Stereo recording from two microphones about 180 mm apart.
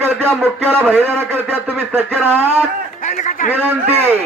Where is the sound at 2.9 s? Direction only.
45° left (ahead or behind).